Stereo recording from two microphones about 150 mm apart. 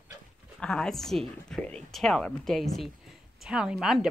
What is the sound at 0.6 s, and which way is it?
A woman's voice, 5° left (ahead or behind).